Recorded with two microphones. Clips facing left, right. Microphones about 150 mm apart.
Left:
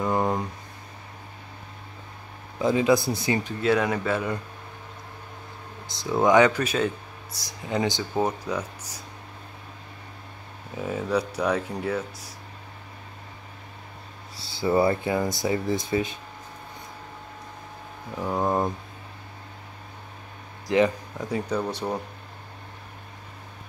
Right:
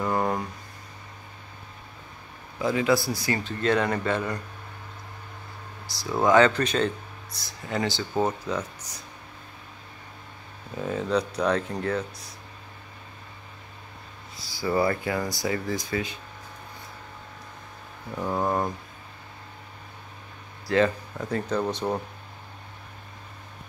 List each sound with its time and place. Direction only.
0.1 s a sound: 20° left (ahead or behind)
2.6 s speech: 20° left (ahead or behind)
3.6 s speech: 10° left (ahead or behind)
5.9 s speech: 20° left (ahead or behind)
10.8 s speech: 10° left (ahead or behind)
14.4 s speech: 25° left (ahead or behind)
18.1 s speech: 5° left (ahead or behind)
20.6 s speech: 15° left (ahead or behind)